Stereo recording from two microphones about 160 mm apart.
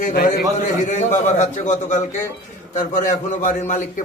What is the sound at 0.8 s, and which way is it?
A man's voice, 50° left (ahead or behind).